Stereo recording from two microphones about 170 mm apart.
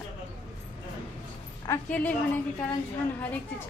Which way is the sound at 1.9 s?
10° left (ahead or behind).